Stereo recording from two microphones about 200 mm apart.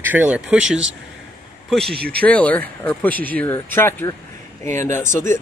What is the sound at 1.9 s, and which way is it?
Speech, 50° right (ahead or behind).